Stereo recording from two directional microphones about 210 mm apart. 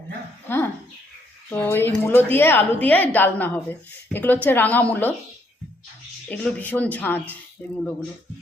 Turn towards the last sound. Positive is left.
turn(degrees=5)  # may be behind; listen again after turning